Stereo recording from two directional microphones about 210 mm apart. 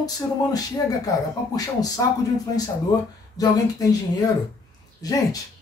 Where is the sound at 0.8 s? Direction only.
15° left (ahead or behind).